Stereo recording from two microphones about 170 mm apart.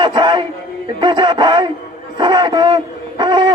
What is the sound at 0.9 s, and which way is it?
Speech, 25° right (ahead or behind).